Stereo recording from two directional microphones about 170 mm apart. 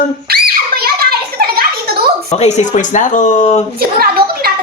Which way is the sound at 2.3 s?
40° left (ahead or behind).